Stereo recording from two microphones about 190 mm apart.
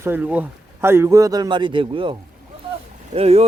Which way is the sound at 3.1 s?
30° right (ahead or behind).